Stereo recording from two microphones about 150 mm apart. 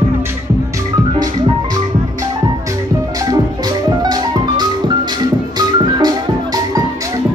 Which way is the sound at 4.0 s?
25° right (ahead or behind).